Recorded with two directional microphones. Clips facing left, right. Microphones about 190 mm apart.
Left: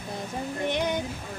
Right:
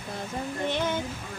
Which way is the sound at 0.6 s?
15° left (ahead or behind).